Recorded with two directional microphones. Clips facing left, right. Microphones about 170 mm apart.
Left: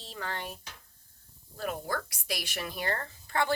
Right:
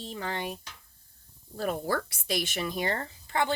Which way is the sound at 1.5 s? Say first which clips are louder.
Right 4 dB; 35° right (ahead or behind).